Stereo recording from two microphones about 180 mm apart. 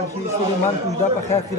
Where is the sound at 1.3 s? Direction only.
15° left (ahead or behind).